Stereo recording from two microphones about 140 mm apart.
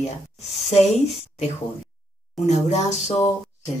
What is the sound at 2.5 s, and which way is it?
Speech, 55° left (ahead or behind).